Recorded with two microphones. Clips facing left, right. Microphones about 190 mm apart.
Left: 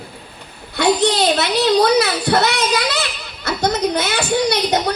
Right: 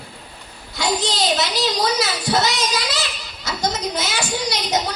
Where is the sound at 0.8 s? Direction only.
60° left (ahead or behind).